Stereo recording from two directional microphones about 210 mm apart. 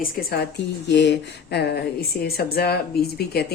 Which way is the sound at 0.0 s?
45° left (ahead or behind).